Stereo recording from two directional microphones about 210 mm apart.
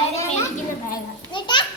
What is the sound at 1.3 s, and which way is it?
Children playing, 20° left (ahead or behind).